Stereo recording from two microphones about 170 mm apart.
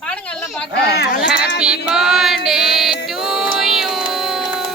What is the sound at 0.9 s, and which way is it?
Speech, 70° left (ahead or behind).